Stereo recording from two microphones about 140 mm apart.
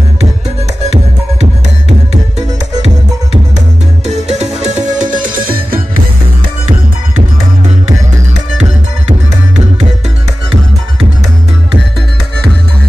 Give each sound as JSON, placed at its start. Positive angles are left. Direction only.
{"t": 1.4, "sound": "music", "side_deg": -50}
{"t": 4.0, "sound": "music", "side_deg": -50}